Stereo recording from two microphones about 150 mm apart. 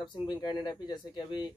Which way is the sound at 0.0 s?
30° left (ahead or behind).